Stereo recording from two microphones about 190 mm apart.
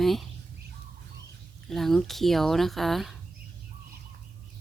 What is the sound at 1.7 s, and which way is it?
Speech, centre (ahead or behind).